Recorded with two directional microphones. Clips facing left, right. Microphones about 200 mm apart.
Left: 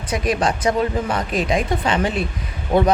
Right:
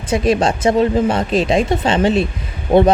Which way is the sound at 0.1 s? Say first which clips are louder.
Right 5 dB; 25° right (ahead or behind).